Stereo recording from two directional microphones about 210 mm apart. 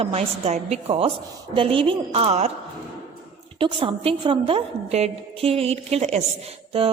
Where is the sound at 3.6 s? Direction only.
25° right (ahead or behind).